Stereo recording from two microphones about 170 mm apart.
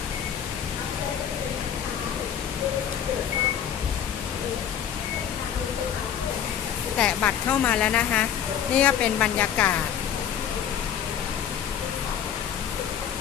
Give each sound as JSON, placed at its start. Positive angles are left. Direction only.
{"t": 7.0, "sound": "a woman's voice", "side_deg": 10}